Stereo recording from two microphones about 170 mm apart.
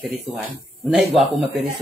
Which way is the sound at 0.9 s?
Centre (ahead or behind).